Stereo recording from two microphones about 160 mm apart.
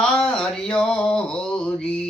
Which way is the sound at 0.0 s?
5° left (ahead or behind).